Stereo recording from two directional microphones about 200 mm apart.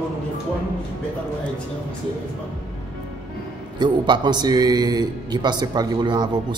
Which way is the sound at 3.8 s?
20° right (ahead or behind).